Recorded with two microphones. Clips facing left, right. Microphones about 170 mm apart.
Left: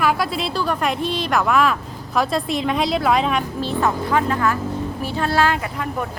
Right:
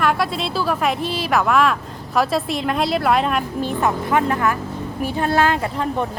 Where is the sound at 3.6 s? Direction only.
15° right (ahead or behind).